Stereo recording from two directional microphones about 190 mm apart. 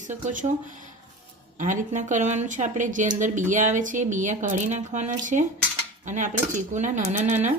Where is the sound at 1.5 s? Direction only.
40° right (ahead or behind).